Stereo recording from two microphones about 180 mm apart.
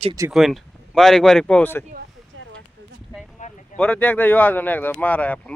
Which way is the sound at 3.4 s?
45° left (ahead or behind).